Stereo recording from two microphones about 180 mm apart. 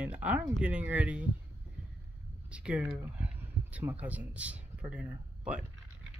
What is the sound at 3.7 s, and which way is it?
Speech, 10° right (ahead or behind).